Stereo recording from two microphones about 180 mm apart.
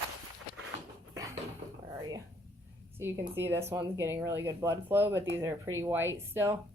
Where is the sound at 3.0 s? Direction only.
15° right (ahead or behind).